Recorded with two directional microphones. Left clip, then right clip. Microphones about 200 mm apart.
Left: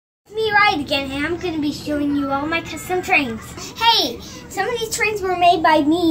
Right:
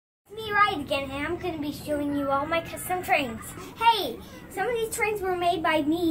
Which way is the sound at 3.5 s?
5° right (ahead or behind).